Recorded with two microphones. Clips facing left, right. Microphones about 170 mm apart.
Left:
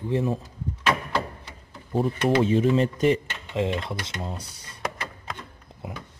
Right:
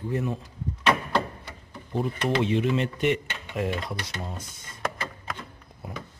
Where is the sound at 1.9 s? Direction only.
40° left (ahead or behind).